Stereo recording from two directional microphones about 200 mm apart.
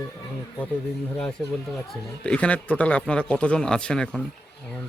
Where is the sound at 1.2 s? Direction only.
5° left (ahead or behind).